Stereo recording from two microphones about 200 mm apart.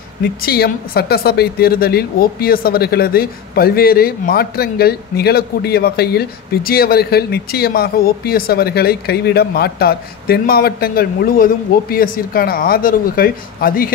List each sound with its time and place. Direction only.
0.4 s a woman's voice: 50° left (ahead or behind)